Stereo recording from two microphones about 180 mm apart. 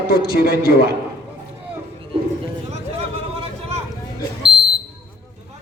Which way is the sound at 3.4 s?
35° right (ahead or behind).